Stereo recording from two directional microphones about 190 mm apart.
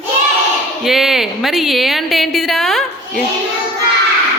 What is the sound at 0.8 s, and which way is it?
A woman's voice, centre (ahead or behind).